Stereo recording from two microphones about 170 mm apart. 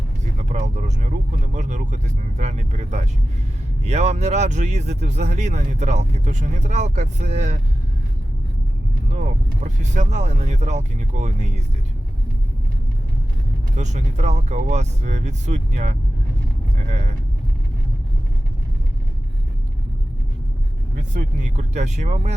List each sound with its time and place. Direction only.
0.3 s speech: 45° right (ahead or behind)
9.0 s speech: 45° right (ahead or behind)
13.7 s speech: 45° right (ahead or behind)
21.1 s speech: 45° right (ahead or behind)